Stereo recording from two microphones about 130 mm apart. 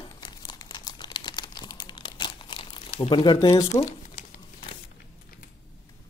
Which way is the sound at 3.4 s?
25° left (ahead or behind).